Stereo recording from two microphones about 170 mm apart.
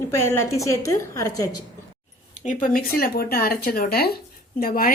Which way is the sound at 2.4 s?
50° left (ahead or behind).